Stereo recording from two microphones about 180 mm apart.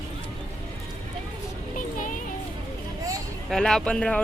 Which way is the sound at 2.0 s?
45° left (ahead or behind).